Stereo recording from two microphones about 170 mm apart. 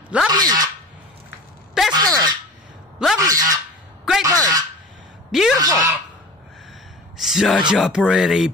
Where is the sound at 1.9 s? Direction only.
25° right (ahead or behind).